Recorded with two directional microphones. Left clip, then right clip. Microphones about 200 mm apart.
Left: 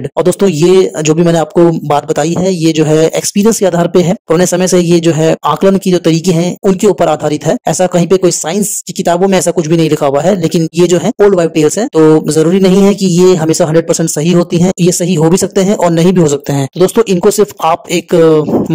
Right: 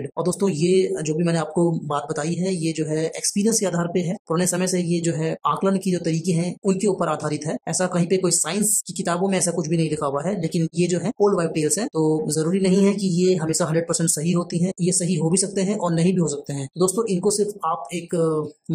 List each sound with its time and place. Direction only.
0.2 s speech: 35° left (ahead or behind)
2.4 s speech: 35° left (ahead or behind)